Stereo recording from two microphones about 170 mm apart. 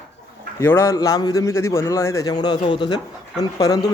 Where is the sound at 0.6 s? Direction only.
15° left (ahead or behind).